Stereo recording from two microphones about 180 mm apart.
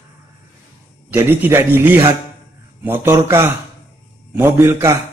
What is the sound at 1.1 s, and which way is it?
Speech, 10° right (ahead or behind).